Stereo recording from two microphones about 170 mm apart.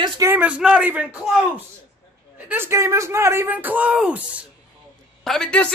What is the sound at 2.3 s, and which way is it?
Speech, 10° right (ahead or behind).